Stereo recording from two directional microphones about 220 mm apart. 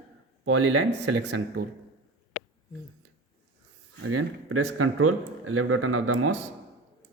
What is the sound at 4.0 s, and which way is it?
Speech, 75° right (ahead or behind).